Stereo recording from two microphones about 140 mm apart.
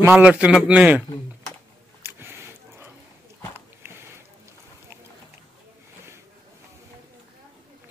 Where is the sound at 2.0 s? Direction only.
15° right (ahead or behind).